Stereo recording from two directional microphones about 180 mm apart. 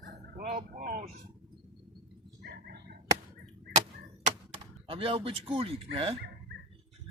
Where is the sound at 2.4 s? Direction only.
60° right (ahead or behind).